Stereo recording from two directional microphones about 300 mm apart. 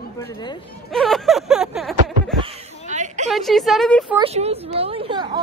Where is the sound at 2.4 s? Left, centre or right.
Right.